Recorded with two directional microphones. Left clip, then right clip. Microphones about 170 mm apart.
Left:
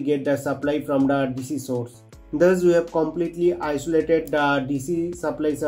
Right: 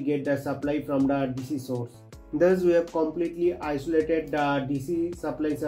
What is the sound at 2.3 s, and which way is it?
Speech, 30° left (ahead or behind).